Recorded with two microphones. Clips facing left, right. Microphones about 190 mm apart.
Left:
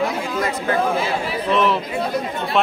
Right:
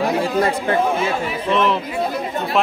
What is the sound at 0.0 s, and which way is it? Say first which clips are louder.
Chatter: right 4 dB; 30° right (ahead or behind).